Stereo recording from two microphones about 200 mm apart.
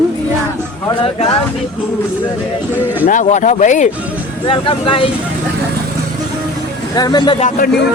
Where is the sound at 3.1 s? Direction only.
40° left (ahead or behind).